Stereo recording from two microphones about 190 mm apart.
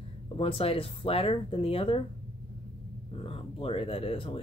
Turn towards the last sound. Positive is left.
turn(degrees=30)  # may be behind; listen again after turning